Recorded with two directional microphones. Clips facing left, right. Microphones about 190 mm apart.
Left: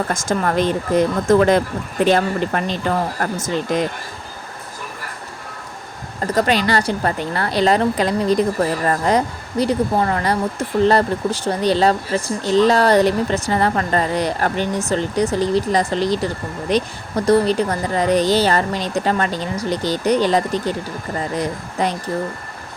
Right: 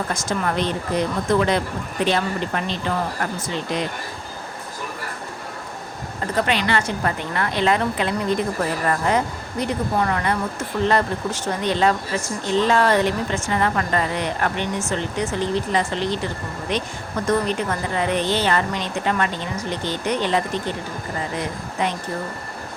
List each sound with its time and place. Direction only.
0.1 s speech: 45° left (ahead or behind)
6.3 s speech: 40° left (ahead or behind)